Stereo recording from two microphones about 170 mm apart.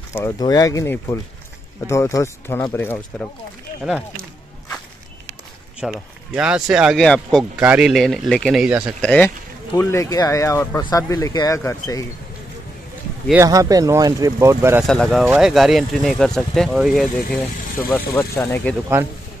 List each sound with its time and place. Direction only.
0.1 s speech: 20° left (ahead or behind)
5.8 s speech: 5° right (ahead or behind)
9.0 s speech: 5° left (ahead or behind)
13.3 s speech: 15° right (ahead or behind)
14.8 s speech: centre (ahead or behind)
18.3 s speech: 15° left (ahead or behind)